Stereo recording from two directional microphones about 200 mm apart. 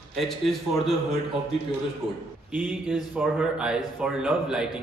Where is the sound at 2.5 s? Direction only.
5° right (ahead or behind).